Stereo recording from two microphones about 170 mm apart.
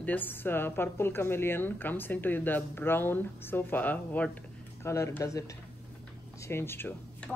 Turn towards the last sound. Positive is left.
turn(degrees=10)  # may be behind; listen again after turning